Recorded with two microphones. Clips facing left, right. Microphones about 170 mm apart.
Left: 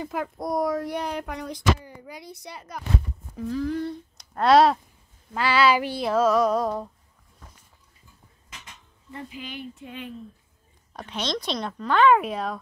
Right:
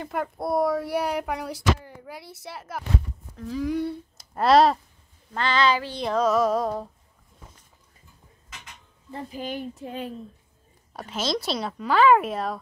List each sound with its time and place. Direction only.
0.0 s speech: centre (ahead or behind)
5.3 s female singing: 5° left (ahead or behind)
6.0 s speech: centre (ahead or behind)
9.1 s speech: 40° right (ahead or behind)
10.9 s speech: 5° right (ahead or behind)